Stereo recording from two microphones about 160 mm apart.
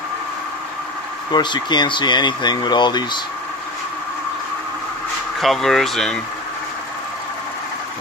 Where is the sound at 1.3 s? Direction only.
30° left (ahead or behind).